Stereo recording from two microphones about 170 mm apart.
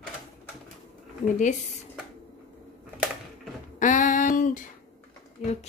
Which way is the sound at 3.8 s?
45° left (ahead or behind).